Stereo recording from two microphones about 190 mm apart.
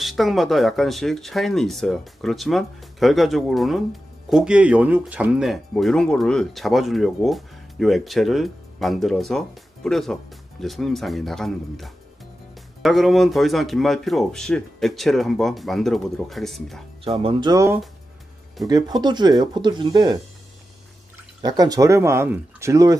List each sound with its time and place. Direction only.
0.0 s speech: centre (ahead or behind)
17.0 s speech: 30° right (ahead or behind)
21.4 s speech: 20° right (ahead or behind)